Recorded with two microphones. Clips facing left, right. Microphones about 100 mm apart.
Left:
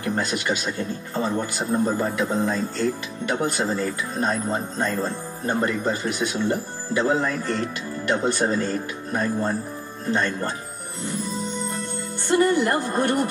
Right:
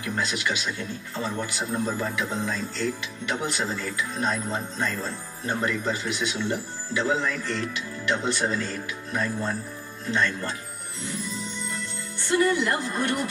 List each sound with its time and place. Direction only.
0.0 s speech: 45° left (ahead or behind)
11.1 s music: 45° left (ahead or behind)